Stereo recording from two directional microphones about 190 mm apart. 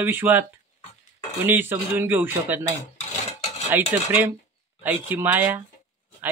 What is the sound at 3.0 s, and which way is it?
Filing, 35° left (ahead or behind).